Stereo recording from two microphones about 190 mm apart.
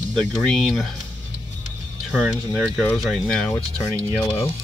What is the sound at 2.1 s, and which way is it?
Speech, centre (ahead or behind).